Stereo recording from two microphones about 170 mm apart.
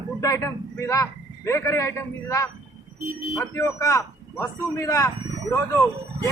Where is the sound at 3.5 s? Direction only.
15° left (ahead or behind).